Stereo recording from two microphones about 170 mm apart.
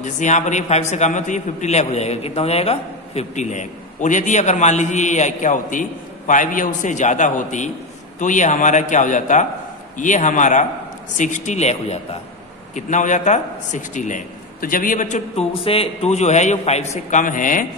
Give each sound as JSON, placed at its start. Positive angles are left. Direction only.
{"t": 0.0, "sound": "a man's voice", "side_deg": 45}